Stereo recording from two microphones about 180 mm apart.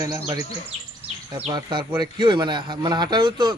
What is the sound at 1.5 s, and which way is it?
Speech, 25° right (ahead or behind).